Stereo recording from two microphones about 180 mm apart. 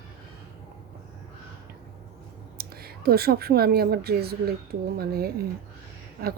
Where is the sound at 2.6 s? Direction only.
60° right (ahead or behind).